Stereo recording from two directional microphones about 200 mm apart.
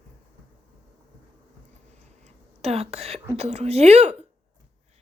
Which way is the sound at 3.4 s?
30° right (ahead or behind).